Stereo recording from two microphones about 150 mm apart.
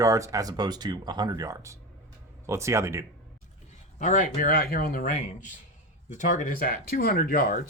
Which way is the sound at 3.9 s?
55° left (ahead or behind).